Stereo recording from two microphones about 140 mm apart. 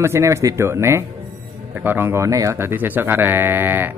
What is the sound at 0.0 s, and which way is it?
Speech, 20° right (ahead or behind).